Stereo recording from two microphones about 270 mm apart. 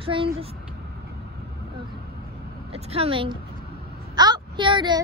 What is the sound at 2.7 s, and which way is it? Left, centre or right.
Speech, right.